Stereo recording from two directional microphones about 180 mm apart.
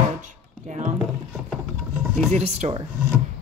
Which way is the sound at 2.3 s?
35° right (ahead or behind).